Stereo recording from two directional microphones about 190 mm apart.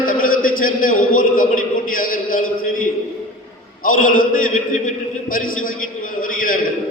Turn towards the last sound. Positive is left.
turn(degrees=45)  # may be behind; listen again after turning